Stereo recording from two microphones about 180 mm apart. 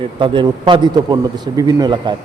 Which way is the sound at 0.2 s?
25° right (ahead or behind).